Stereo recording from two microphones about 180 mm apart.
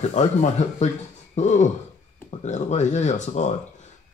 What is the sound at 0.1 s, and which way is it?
Speech, 40° left (ahead or behind).